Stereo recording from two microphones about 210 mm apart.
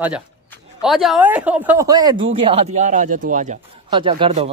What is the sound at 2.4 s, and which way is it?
Speech, 30° right (ahead or behind).